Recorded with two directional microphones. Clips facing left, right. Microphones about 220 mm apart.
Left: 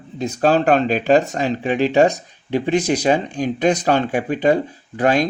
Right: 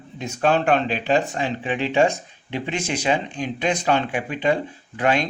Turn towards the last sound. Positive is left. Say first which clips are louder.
# left 4 dB
turn(degrees=40)  # may be behind; listen again after turning